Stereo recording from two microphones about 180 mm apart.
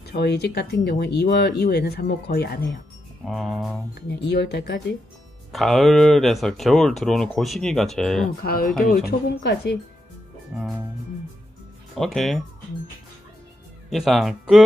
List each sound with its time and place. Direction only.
0.1 s speech: 65° left (ahead or behind)
3.3 s speech: centre (ahead or behind)
3.9 s speech: 70° left (ahead or behind)
5.5 s speech: centre (ahead or behind)
8.5 s speech: 55° left (ahead or behind)
11.9 s speech: centre (ahead or behind)
13.8 s speech: centre (ahead or behind)